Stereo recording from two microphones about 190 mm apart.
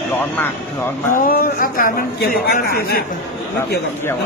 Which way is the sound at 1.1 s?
50° left (ahead or behind).